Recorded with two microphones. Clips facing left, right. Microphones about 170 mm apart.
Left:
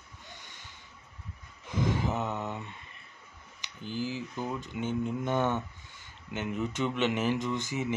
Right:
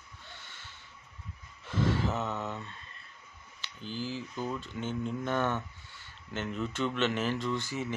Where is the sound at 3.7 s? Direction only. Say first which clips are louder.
Left 3 dB; 15° left (ahead or behind).